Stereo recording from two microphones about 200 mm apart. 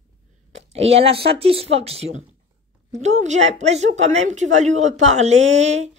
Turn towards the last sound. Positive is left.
turn(degrees=-35)  # may be behind; listen again after turning